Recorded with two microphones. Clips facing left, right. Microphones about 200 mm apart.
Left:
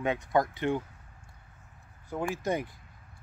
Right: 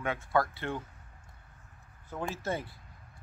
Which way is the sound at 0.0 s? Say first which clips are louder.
Left 3 dB; 20° left (ahead or behind).